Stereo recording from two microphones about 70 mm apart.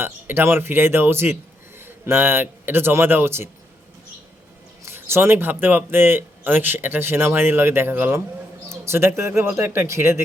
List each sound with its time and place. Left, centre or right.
0.0 s a man's voice: right
4.8 s speech: right